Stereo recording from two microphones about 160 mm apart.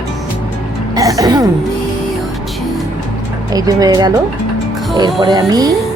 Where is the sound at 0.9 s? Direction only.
20° right (ahead or behind).